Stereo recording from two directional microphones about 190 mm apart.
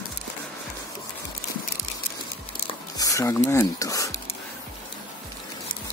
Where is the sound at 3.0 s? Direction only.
15° left (ahead or behind).